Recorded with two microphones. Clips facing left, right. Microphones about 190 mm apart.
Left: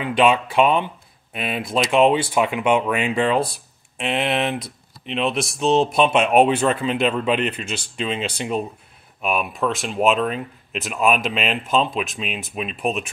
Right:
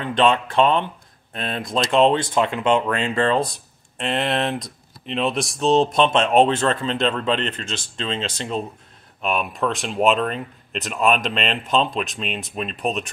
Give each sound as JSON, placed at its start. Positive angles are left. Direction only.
{"t": 0.0, "sound": "speech", "side_deg": 10}